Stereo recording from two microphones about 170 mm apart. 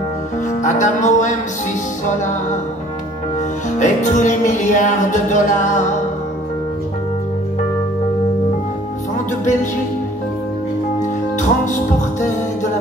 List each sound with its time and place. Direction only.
0.6 s speech: 45° left (ahead or behind)
3.8 s speech: 45° left (ahead or behind)
9.4 s speech: 45° left (ahead or behind)
11.0 s music: 45° left (ahead or behind)